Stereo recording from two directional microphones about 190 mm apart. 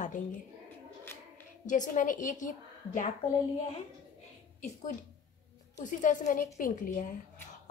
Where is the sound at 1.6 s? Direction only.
40° left (ahead or behind).